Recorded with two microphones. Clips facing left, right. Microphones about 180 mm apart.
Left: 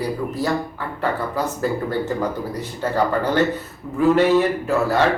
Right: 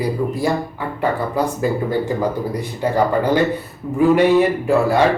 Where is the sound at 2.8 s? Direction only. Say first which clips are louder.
Right 3 dB; 10° right (ahead or behind).